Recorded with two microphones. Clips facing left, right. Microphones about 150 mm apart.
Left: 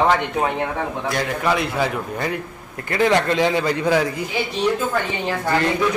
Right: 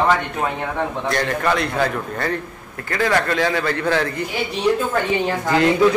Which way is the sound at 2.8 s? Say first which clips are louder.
Left 2 dB; 20° left (ahead or behind).